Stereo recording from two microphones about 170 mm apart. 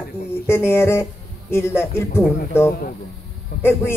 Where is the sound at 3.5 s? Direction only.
60° left (ahead or behind).